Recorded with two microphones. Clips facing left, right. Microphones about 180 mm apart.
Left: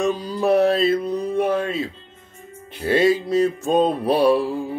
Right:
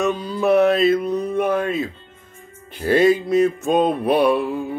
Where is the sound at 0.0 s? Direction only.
35° left (ahead or behind).